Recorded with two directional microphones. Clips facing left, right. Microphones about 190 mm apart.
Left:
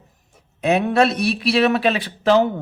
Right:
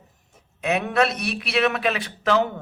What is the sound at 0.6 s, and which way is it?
A man's voice, 30° left (ahead or behind).